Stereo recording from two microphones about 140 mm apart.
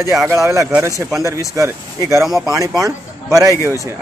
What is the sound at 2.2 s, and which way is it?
Speech, centre (ahead or behind).